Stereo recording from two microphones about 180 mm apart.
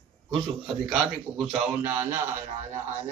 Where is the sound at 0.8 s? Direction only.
Centre (ahead or behind).